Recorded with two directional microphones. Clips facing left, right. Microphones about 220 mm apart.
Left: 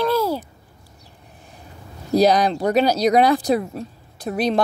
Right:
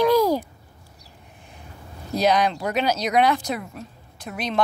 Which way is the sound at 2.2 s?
35° left (ahead or behind).